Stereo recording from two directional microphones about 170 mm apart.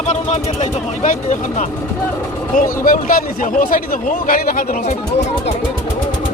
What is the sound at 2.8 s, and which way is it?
Speech, 55° left (ahead or behind).